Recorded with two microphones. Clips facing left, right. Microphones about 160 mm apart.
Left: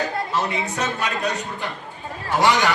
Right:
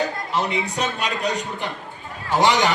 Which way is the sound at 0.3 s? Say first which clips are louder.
Right 3 dB; 15° right (ahead or behind).